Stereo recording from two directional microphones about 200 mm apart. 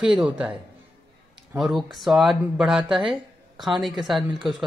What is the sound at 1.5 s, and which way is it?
Speech, centre (ahead or behind).